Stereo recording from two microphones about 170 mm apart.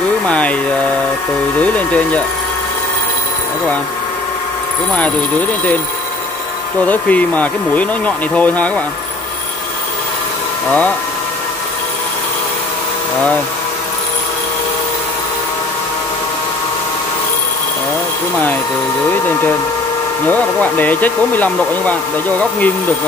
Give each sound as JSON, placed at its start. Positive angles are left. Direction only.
{"t": 0.3, "sound": "speech", "side_deg": 10}
{"t": 1.6, "sound": "speech", "side_deg": 10}
{"t": 6.9, "sound": "speech", "side_deg": 10}
{"t": 20.2, "sound": "speech", "side_deg": 10}